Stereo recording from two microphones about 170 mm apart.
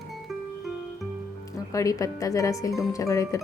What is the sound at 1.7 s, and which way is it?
Speech, 20° left (ahead or behind).